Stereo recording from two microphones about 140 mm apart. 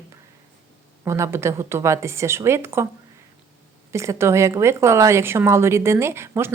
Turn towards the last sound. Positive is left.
turn(degrees=-15)  # may be behind; listen again after turning